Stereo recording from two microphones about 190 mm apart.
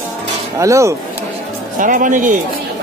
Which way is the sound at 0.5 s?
15° right (ahead or behind).